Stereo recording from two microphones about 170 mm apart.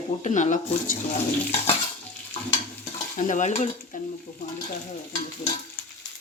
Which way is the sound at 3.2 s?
45° left (ahead or behind).